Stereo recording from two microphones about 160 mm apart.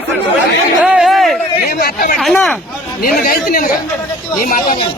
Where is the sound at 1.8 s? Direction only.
70° left (ahead or behind).